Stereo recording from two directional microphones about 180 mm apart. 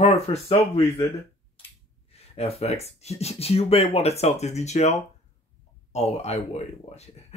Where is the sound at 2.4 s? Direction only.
35° left (ahead or behind).